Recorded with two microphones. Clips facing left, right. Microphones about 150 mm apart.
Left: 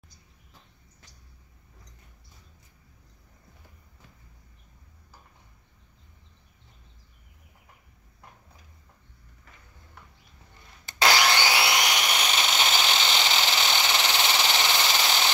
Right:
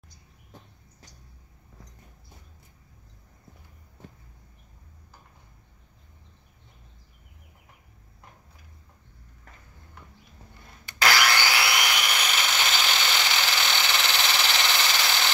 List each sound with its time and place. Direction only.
10.9 s wood: 25° left (ahead or behind)